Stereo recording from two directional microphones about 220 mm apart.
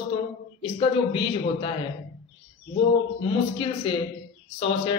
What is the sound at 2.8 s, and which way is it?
A man's voice, 25° left (ahead or behind).